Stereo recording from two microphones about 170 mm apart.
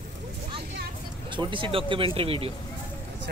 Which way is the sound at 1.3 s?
30° right (ahead or behind).